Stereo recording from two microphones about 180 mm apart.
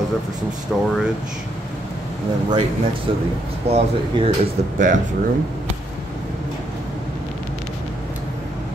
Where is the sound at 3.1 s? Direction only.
30° right (ahead or behind).